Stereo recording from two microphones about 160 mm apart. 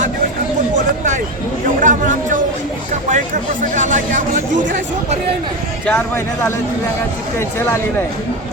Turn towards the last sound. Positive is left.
turn(degrees=15)  # may be behind; listen again after turning